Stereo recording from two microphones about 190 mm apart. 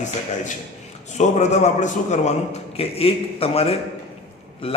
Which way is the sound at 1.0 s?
40° left (ahead or behind).